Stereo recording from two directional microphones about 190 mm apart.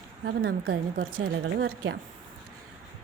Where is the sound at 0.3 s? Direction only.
60° right (ahead or behind).